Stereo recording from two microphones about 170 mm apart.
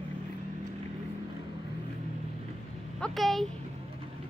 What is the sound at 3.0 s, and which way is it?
Speech, centre (ahead or behind).